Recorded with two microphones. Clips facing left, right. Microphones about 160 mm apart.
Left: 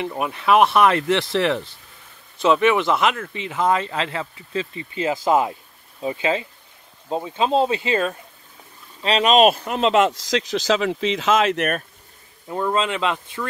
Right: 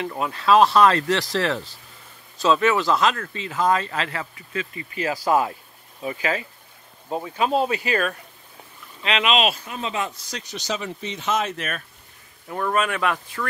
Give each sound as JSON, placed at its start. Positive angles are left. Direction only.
{"t": 0.0, "sound": "speech", "side_deg": 20}
{"t": 9.0, "sound": "speech", "side_deg": 35}
{"t": 9.7, "sound": "speech", "side_deg": 85}
{"t": 12.4, "sound": "speech", "side_deg": 20}